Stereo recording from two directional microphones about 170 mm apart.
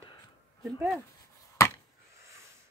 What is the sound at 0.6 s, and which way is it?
Speech, centre (ahead or behind).